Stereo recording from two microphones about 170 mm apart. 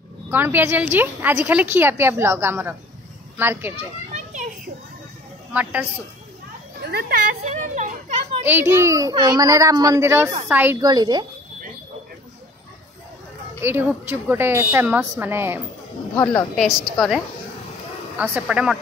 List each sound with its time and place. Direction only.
0.3 s a woman's voice: 10° right (ahead or behind)
3.7 s children playing: 45° right (ahead or behind)
5.5 s a woman's voice: 10° right (ahead or behind)
6.8 s speech: 65° right (ahead or behind); by 7.9 s 45° right (ahead or behind)
8.5 s a woman's voice: 10° right (ahead or behind)
10.8 s a woman's voice: 25° right (ahead or behind)
13.6 s a woman's voice: 15° right (ahead or behind)
16.5 s a woman's voice: centre (ahead or behind)
18.1 s a woman's voice: 10° right (ahead or behind)